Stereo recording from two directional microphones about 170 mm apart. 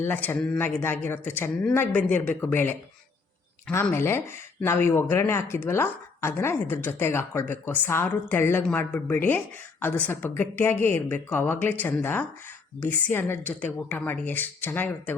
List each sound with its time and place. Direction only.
0.0 s speech: 10° left (ahead or behind)